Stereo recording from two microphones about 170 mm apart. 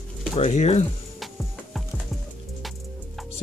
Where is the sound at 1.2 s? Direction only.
Centre (ahead or behind).